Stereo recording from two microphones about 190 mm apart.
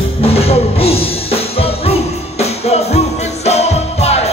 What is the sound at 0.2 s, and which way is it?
Music, 30° left (ahead or behind).